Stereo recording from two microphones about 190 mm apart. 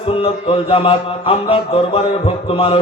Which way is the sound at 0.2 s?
30° left (ahead or behind).